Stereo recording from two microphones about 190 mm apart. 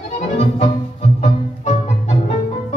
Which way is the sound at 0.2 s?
35° left (ahead or behind).